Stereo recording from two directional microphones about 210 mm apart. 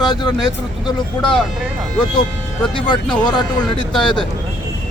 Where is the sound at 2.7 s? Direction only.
25° left (ahead or behind).